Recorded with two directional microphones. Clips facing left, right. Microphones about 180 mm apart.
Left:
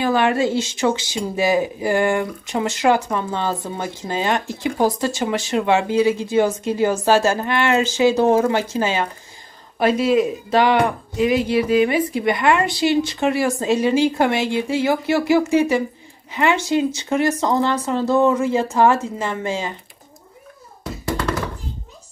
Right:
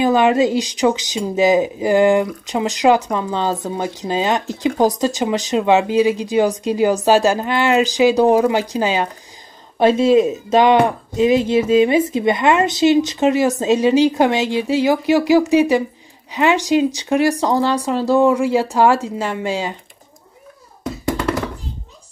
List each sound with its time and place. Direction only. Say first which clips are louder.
0.0 s speech: right 4 dB; 20° right (ahead or behind)